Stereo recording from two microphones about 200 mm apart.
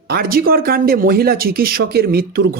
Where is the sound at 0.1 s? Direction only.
50° right (ahead or behind).